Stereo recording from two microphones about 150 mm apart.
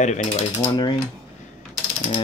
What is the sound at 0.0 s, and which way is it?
Speech, 50° left (ahead or behind).